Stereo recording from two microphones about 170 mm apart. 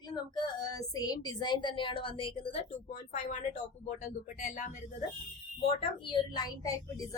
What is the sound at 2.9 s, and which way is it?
Speech, 45° left (ahead or behind).